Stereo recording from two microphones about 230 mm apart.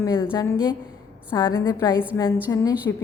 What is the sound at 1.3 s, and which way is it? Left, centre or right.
A woman's voice, centre.